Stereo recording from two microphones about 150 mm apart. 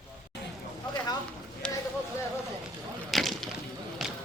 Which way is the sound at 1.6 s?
5° left (ahead or behind).